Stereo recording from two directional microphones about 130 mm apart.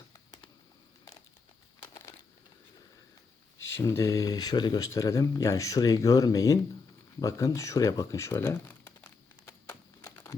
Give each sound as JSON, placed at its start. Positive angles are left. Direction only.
{"t": 1.8, "sound": "crumpling", "side_deg": 30}
{"t": 3.6, "sound": "speech", "side_deg": 20}
{"t": 9.5, "sound": "crumpling", "side_deg": 20}